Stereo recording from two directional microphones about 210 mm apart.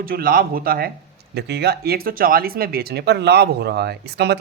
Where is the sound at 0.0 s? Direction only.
45° right (ahead or behind).